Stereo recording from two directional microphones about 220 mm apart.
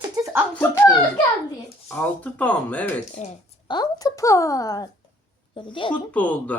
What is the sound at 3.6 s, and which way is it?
A woman's voice, 20° left (ahead or behind).